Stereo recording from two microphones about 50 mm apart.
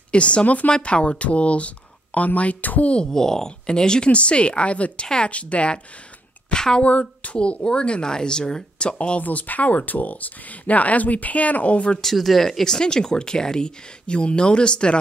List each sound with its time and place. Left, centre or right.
0.1 s speech: left
3.1 s a woman's voice: centre
6.8 s speech: left
9.2 s speech: left
12.0 s speech: centre